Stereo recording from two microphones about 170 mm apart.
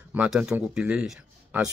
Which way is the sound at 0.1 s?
5° right (ahead or behind).